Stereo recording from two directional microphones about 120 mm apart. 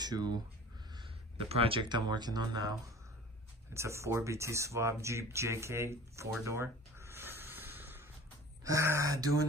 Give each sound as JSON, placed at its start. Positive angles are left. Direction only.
{"t": 0.0, "sound": "speech", "side_deg": -35}
{"t": 0.9, "sound": "speech", "side_deg": -50}
{"t": 3.7, "sound": "speech", "side_deg": -25}